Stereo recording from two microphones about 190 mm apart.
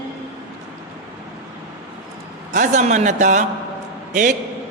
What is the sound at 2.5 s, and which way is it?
Speech, 40° right (ahead or behind).